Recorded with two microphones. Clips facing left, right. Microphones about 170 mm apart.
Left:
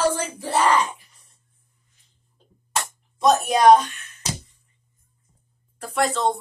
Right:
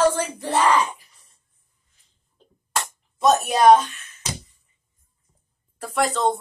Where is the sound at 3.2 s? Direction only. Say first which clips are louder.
Even; 5° right (ahead or behind).